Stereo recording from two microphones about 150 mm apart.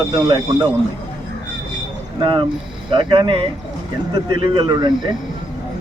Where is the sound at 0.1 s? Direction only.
30° right (ahead or behind).